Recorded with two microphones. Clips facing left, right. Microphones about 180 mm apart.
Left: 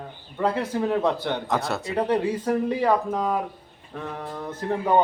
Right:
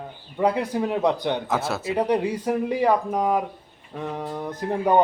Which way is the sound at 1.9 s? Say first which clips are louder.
Right 1 dB; 15° right (ahead or behind).